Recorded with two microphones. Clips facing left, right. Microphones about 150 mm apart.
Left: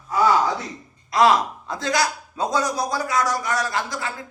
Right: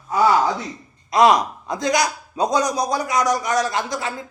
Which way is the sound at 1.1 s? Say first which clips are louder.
Right 2 dB; 20° right (ahead or behind).